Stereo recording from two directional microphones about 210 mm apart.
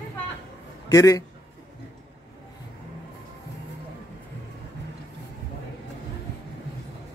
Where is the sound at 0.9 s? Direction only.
15° left (ahead or behind).